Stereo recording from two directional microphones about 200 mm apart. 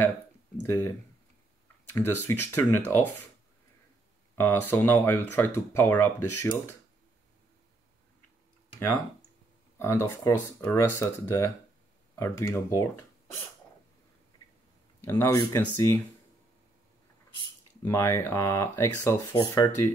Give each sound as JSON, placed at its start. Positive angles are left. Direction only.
{"t": 0.7, "sound": "speech", "side_deg": 15}
{"t": 4.6, "sound": "speech", "side_deg": 10}
{"t": 9.8, "sound": "speech", "side_deg": 15}
{"t": 15.0, "sound": "speech", "side_deg": 15}
{"t": 17.8, "sound": "speech", "side_deg": 15}